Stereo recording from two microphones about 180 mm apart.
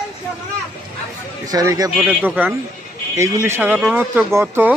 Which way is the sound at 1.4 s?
20° right (ahead or behind).